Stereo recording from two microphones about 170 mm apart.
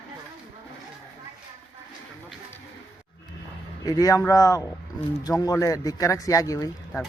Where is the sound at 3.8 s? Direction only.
20° left (ahead or behind).